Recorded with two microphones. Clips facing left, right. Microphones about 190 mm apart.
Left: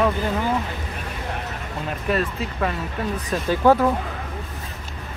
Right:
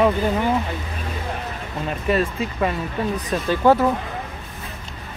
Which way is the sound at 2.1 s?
Centre (ahead or behind).